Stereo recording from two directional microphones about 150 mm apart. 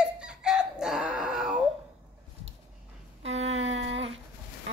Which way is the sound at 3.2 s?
45° right (ahead or behind).